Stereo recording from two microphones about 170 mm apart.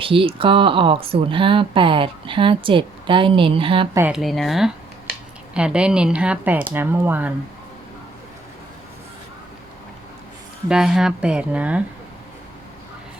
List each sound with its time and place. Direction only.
0.0 s speech: 30° right (ahead or behind)
3.9 s speech: 10° right (ahead or behind)
4.2 s speech: centre (ahead or behind)
10.7 s speech: 5° right (ahead or behind)